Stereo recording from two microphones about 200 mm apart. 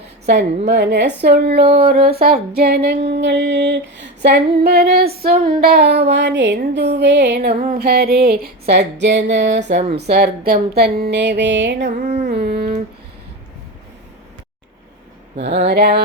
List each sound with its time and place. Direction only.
0.7 s music: 60° right (ahead or behind)
1.2 s speech: 55° right (ahead or behind)
3.1 s music: 60° right (ahead or behind)
11.9 s a sound: 40° right (ahead or behind)
12.3 s a sound: 55° right (ahead or behind)
15.4 s music: 60° right (ahead or behind)